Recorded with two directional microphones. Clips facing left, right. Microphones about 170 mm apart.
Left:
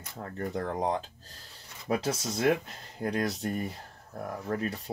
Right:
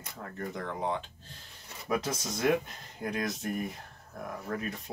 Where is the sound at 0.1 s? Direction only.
35° left (ahead or behind).